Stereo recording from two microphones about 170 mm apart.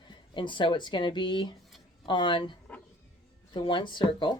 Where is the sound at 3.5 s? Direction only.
30° left (ahead or behind).